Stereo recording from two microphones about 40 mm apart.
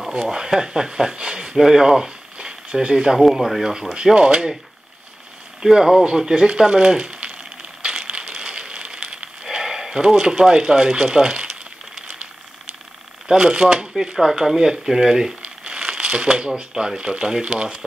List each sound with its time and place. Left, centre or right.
0.1 s speech: centre
2.3 s a sound: right
3.2 s speech: centre
3.9 s speech: right
5.6 s speech: centre; by 7.3 s right
7.8 s crushing: right
9.4 s a sound: centre
10.0 s speech: right
13.3 s speech: centre
15.4 s speech: right